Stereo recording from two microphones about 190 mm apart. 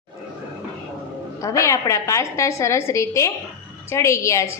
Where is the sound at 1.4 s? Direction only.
15° left (ahead or behind).